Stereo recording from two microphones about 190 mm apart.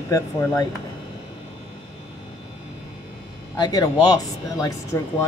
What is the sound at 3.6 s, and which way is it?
Speech, 20° left (ahead or behind).